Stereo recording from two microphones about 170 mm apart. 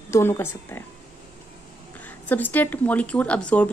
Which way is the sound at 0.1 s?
15° left (ahead or behind).